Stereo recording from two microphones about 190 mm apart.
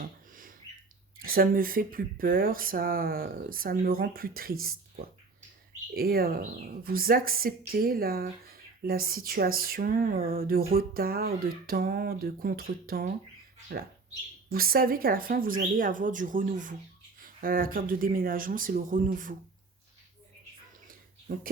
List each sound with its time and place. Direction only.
0.3 s bird: 45° right (ahead or behind)
1.2 s speech: 50° right (ahead or behind)
5.9 s speech: 55° right (ahead or behind)